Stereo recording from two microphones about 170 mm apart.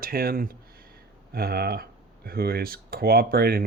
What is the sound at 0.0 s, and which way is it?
Speech, 60° right (ahead or behind).